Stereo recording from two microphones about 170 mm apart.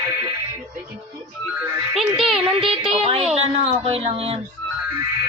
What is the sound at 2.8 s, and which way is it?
A woman's voice, 35° right (ahead or behind).